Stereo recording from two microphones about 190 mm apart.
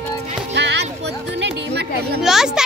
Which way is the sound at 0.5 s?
65° right (ahead or behind).